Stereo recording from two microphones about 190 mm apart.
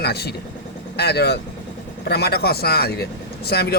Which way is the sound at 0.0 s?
55° left (ahead or behind).